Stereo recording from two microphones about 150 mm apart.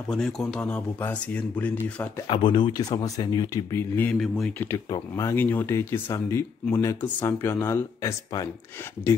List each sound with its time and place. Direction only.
0.1 s speech: 5° left (ahead or behind)
2.2 s speech: 30° left (ahead or behind)